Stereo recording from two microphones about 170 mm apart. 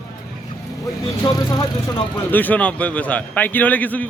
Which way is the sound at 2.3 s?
10° left (ahead or behind).